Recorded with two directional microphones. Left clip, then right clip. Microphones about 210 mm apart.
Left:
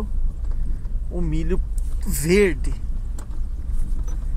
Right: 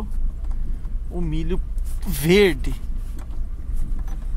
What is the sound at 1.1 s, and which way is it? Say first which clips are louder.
Speech: left 1 dB; 10° right (ahead or behind).